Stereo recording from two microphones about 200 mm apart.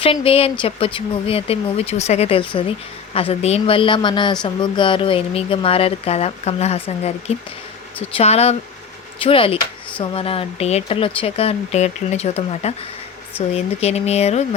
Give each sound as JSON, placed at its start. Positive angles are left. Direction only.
{"t": 0.0, "sound": "speech", "side_deg": 25}